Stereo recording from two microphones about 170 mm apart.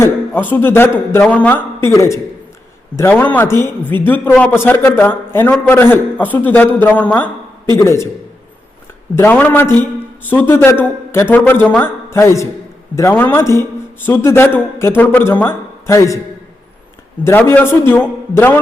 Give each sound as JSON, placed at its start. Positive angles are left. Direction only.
{"t": 0.0, "sound": "a man's voice", "side_deg": 10}
{"t": 9.1, "sound": "a man's voice", "side_deg": 10}
{"t": 17.2, "sound": "a man's voice", "side_deg": 10}